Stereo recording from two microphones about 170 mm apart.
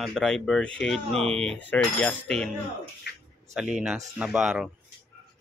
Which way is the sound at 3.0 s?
80° left.